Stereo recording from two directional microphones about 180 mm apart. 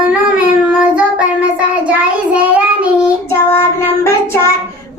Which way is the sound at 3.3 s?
15° left (ahead or behind).